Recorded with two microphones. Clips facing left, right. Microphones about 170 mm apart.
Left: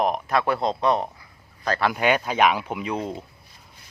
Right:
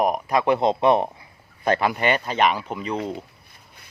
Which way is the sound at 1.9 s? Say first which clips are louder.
Left 1 dB; centre (ahead or behind).